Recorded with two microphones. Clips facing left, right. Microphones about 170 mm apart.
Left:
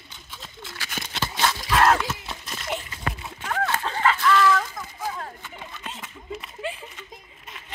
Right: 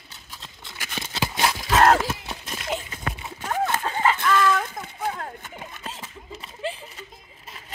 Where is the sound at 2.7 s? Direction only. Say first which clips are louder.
Right 1 dB; 25° right (ahead or behind).